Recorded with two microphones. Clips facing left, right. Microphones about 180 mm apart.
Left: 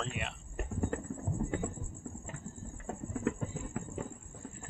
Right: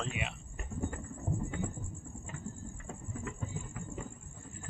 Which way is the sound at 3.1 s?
60° left (ahead or behind).